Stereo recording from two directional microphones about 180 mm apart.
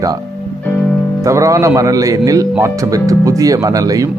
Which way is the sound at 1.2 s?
15° right (ahead or behind).